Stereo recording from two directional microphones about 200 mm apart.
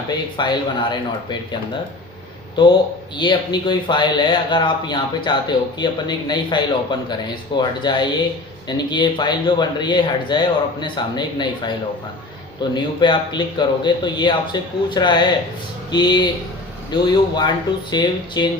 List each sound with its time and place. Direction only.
0.1 s speech: 20° left (ahead or behind)
3.2 s speech: 20° left (ahead or behind)
12.7 s speech: 20° left (ahead or behind)